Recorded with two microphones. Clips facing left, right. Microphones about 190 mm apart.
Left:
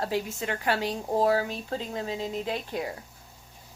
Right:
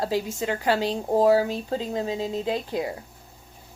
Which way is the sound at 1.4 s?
30° right (ahead or behind).